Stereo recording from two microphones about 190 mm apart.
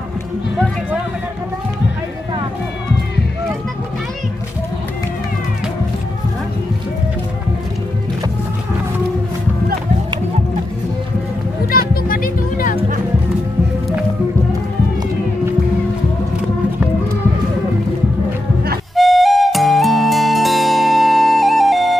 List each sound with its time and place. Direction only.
11.9 s music: 50° left (ahead or behind)
18.9 s flute: centre (ahead or behind)